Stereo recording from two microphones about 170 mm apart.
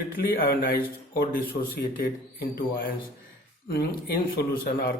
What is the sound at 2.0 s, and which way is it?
Speech, 65° left (ahead or behind).